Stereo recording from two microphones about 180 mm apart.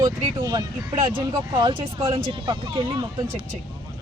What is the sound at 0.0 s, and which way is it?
Speech, 25° right (ahead or behind).